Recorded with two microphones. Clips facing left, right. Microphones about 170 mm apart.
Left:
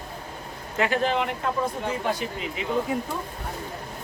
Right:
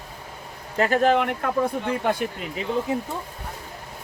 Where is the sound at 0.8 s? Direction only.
45° right (ahead or behind).